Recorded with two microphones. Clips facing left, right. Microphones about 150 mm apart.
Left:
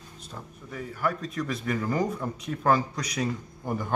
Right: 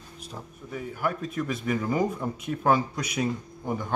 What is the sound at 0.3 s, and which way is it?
A man's voice, 5° right (ahead or behind).